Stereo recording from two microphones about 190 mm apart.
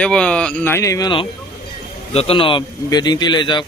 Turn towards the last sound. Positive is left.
turn(degrees=25)  # may be behind; listen again after turning